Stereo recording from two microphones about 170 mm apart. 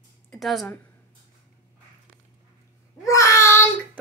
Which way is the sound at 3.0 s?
20° left (ahead or behind).